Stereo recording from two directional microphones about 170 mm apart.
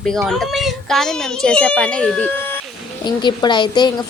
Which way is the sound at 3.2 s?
25° left (ahead or behind).